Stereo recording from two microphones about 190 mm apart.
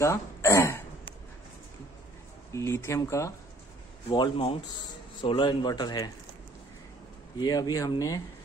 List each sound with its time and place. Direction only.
0.0 s throat clearing: 15° left (ahead or behind)
2.5 s speech: 15° left (ahead or behind)
4.1 s speech: 25° left (ahead or behind)
7.3 s speech: 20° left (ahead or behind)